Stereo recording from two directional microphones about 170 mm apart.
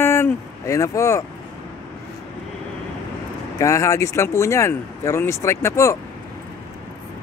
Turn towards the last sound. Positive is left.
turn(degrees=15)  # may be behind; listen again after turning